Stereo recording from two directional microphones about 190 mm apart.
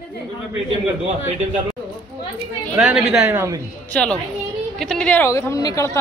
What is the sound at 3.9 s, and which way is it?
A man's voice, 5° left (ahead or behind).